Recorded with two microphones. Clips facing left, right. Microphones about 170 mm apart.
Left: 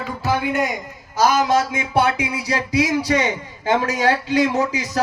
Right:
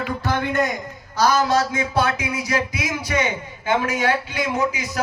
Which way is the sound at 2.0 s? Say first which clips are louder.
Left 4 dB; 25° left (ahead or behind).